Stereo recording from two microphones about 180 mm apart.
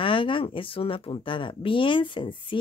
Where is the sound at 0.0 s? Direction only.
30° left (ahead or behind).